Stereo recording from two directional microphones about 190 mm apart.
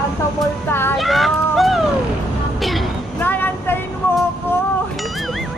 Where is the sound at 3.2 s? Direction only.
10° left (ahead or behind).